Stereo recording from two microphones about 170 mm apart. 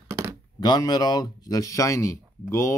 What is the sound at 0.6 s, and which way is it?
Speech, 25° left (ahead or behind).